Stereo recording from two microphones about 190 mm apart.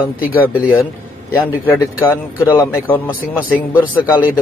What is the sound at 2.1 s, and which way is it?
A man's voice, 15° left (ahead or behind).